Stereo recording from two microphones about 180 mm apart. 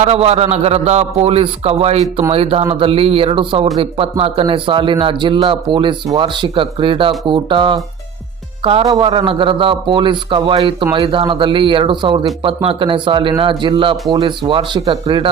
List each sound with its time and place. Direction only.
0.0 s a man's voice: 35° right (ahead or behind)